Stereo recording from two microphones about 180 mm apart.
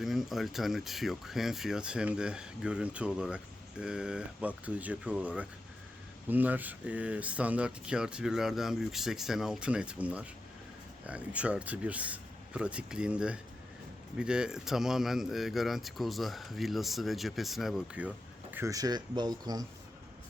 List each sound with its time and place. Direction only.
0.0 s speech: centre (ahead or behind)
18.5 s speech: 15° right (ahead or behind)